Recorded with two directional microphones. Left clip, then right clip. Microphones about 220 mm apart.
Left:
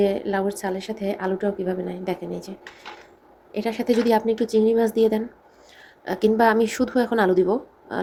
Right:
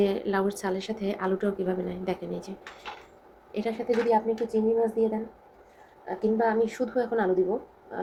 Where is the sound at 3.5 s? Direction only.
20° left (ahead or behind).